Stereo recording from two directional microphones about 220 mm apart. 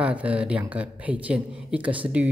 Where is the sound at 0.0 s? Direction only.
5° right (ahead or behind).